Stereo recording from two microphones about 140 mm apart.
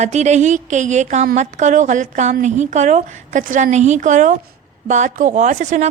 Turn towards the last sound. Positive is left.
turn(degrees=-55)  # may be behind; listen again after turning